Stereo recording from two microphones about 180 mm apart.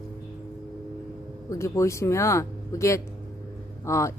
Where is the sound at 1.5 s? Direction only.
15° left (ahead or behind).